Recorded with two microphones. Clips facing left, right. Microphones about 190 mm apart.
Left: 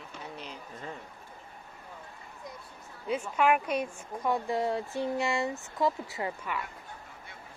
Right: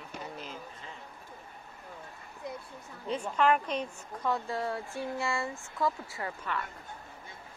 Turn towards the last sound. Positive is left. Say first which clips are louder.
# left 2 dB
turn(degrees=15)  # may be behind; listen again after turning